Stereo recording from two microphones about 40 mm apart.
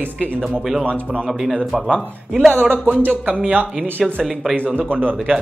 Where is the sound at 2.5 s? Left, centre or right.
Right.